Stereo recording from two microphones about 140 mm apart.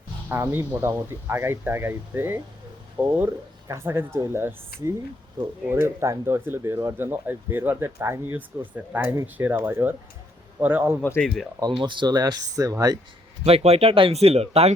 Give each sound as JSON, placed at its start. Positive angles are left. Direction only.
{"t": 0.3, "sound": "speech", "side_deg": -15}
{"t": 4.7, "sound": "speech", "side_deg": 90}
{"t": 5.7, "sound": "speech", "side_deg": -20}
{"t": 11.0, "sound": "speech", "side_deg": 15}
{"t": 11.6, "sound": "speech", "side_deg": -35}
{"t": 13.4, "sound": "speech", "side_deg": -45}